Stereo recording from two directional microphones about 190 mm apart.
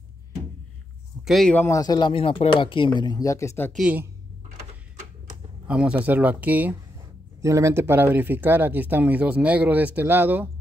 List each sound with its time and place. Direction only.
1.2 s speech: centre (ahead or behind)
3.7 s speech: 5° right (ahead or behind)
5.7 s speech: 5° right (ahead or behind)